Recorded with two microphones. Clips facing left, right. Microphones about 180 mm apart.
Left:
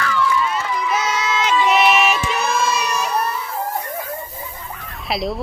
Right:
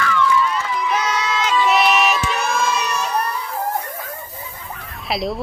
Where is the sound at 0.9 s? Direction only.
5° left (ahead or behind).